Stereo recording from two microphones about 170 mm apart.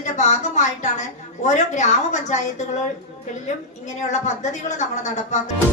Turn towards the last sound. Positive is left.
turn(degrees=45)  # may be behind; listen again after turning